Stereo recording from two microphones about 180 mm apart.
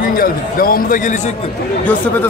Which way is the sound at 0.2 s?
50° left (ahead or behind).